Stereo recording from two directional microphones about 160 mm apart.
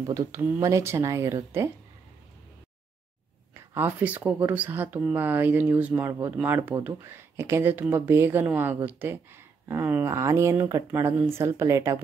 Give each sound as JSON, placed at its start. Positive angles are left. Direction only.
{"t": 0.1, "sound": "speech", "side_deg": -15}
{"t": 3.7, "sound": "speech", "side_deg": -10}